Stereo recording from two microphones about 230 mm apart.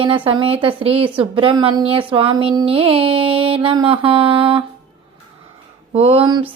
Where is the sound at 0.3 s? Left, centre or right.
Right.